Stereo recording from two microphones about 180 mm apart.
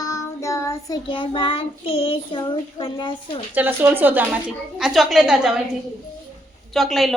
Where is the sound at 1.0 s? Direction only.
30° left (ahead or behind).